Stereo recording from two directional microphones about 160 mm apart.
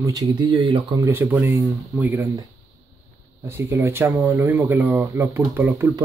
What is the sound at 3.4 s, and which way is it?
Speech, 15° right (ahead or behind).